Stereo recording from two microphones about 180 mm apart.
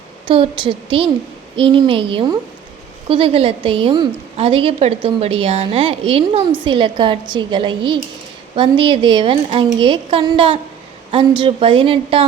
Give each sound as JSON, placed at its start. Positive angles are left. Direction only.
{"t": 0.3, "sound": "a woman's voice", "side_deg": -30}